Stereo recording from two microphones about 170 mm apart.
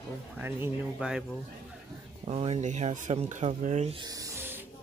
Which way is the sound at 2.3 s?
40° right (ahead or behind).